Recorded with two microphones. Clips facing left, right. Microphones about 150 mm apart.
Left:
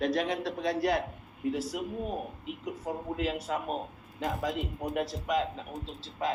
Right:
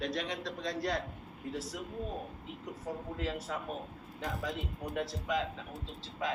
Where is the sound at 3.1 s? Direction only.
75° left (ahead or behind).